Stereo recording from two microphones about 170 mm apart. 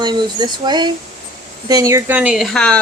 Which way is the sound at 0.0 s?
25° right (ahead or behind).